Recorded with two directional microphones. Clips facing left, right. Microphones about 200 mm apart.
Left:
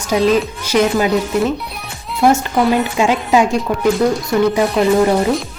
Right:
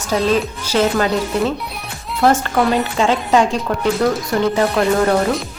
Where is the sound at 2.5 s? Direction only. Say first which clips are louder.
Left 2 dB; 10° left (ahead or behind).